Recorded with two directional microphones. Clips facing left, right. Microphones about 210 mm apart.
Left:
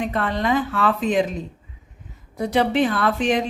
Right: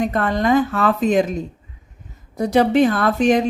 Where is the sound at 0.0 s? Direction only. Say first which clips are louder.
Right 4 dB; 45° right (ahead or behind).